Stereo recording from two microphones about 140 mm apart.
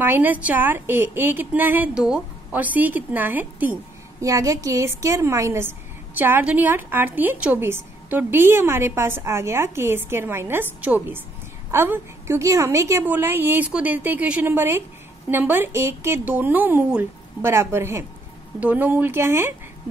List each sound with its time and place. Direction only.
0.0 s a woman's voice: 15° right (ahead or behind)
4.2 s a woman's voice: 25° right (ahead or behind)